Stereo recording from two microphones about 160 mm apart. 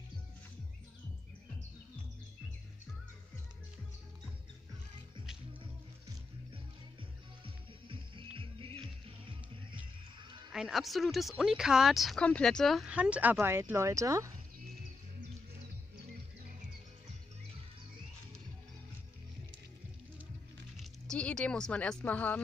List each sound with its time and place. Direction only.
5.6 s music: 35° right (ahead or behind)
10.5 s speech: centre (ahead or behind); by 14.3 s 20° right (ahead or behind)
20.7 s speech: 5° left (ahead or behind)